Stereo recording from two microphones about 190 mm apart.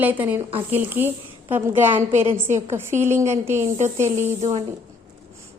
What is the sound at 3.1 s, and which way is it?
Speech, 35° right (ahead or behind).